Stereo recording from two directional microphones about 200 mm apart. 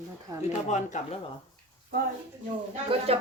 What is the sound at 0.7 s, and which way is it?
Speech, 35° left (ahead or behind).